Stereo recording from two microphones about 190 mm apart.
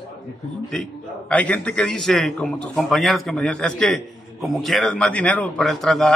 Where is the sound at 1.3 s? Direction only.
5° left (ahead or behind).